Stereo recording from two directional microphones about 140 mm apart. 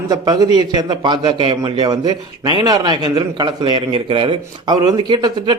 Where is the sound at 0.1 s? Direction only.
30° right (ahead or behind).